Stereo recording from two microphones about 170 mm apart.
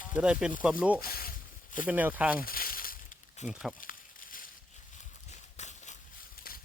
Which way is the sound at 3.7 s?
55° left (ahead or behind).